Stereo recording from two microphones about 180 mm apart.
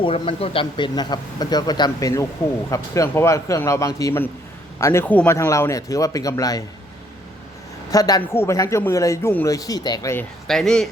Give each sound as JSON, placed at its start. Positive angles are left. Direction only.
{"t": 0.0, "sound": "a man's voice", "side_deg": 30}
{"t": 7.9, "sound": "a man's voice", "side_deg": 20}
{"t": 10.4, "sound": "speech", "side_deg": 0}